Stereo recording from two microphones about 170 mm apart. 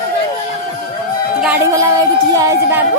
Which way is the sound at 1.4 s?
15° right (ahead or behind).